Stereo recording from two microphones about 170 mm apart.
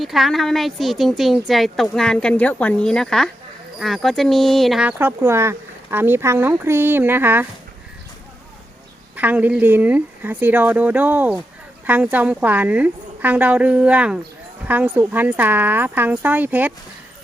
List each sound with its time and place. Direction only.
0.0 s a woman's voice: centre (ahead or behind)
9.1 s speech: 10° right (ahead or behind)